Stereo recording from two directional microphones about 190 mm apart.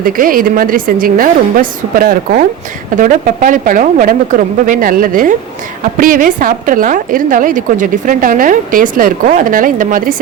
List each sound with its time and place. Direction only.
0.0 s a woman's voice: 50° right (ahead or behind)